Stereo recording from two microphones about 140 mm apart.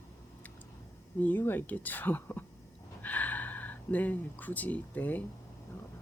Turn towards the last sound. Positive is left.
turn(degrees=10)  # may be behind; listen again after turning